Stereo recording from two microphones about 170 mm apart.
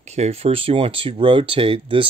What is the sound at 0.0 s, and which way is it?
Speech, 40° right (ahead or behind).